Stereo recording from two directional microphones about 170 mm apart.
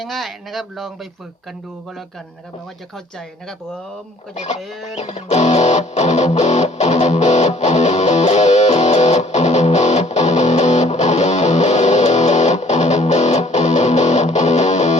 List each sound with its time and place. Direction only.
0.0 s speech: centre (ahead or behind)
4.4 s speech: 45° left (ahead or behind)